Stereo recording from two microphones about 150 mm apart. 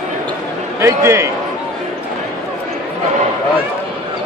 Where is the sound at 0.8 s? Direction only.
20° right (ahead or behind).